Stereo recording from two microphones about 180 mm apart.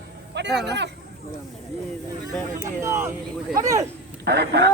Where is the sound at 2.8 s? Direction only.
15° right (ahead or behind).